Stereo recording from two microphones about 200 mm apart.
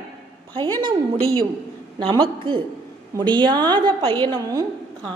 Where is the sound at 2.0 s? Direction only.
25° right (ahead or behind).